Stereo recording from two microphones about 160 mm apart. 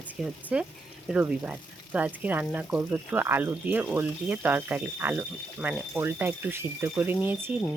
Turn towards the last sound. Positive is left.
turn(degrees=-10)  # may be behind; listen again after turning